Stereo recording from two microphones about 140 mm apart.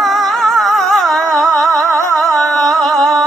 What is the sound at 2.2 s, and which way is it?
Music, centre (ahead or behind).